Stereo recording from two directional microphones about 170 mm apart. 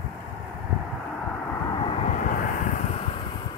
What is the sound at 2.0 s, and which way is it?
Vehicle, 50° left (ahead or behind).